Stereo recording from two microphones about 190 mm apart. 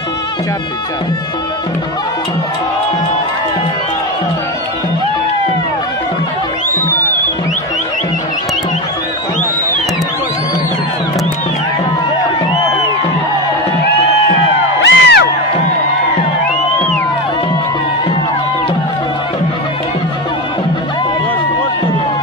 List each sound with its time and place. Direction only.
14.8 s music: 65° left (ahead or behind)